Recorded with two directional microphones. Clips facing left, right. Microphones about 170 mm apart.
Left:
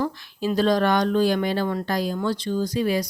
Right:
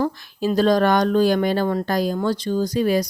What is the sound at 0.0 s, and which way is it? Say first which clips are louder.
Speech: right 3 dB; 45° right (ahead or behind).